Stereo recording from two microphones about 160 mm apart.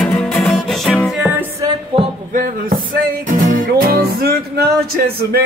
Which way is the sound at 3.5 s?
65° right (ahead or behind).